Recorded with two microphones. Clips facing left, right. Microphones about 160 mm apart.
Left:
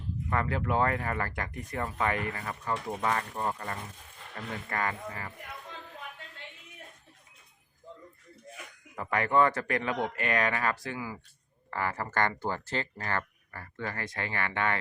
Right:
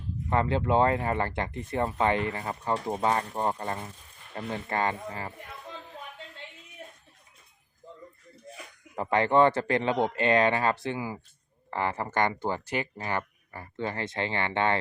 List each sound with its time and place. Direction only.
0.3 s speech: 25° right (ahead or behind)
8.5 s speech: 30° right (ahead or behind)